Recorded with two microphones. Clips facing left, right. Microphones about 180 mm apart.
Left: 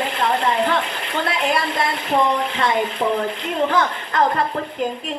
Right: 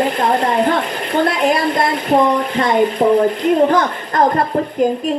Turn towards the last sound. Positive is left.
turn(degrees=-45)  # may be behind; listen again after turning